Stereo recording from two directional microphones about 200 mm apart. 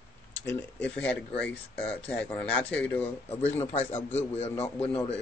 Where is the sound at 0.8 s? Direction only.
5° left (ahead or behind).